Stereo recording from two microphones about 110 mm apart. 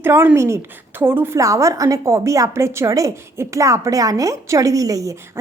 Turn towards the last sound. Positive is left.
turn(degrees=-30)  # may be behind; listen again after turning